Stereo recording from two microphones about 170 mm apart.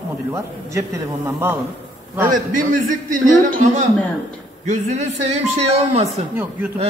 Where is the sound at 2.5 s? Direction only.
50° right (ahead or behind).